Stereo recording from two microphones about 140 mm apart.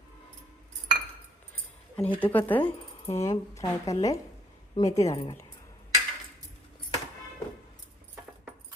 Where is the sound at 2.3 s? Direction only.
15° left (ahead or behind).